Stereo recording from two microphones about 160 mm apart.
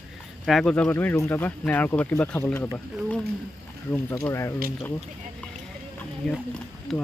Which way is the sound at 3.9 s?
15° left (ahead or behind).